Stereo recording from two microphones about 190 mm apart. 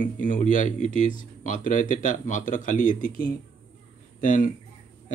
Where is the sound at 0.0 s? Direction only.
40° left (ahead or behind).